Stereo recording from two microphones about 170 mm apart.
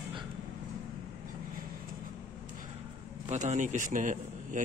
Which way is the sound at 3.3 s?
45° right (ahead or behind).